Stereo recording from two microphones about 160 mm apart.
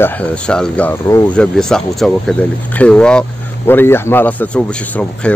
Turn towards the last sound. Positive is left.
turn(degrees=10)  # may be behind; listen again after turning